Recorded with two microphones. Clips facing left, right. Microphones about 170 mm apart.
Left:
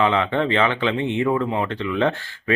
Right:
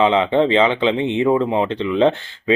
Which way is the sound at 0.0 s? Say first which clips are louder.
Right 5 dB; 20° right (ahead or behind).